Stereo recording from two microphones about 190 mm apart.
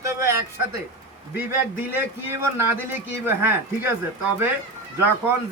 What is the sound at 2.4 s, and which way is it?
Speech, 10° right (ahead or behind).